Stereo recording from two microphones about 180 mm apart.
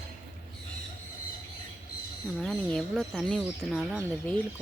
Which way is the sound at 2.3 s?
Centre (ahead or behind).